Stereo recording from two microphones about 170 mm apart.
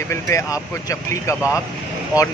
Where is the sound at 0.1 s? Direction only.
20° left (ahead or behind).